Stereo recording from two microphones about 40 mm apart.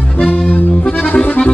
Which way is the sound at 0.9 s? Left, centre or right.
Left.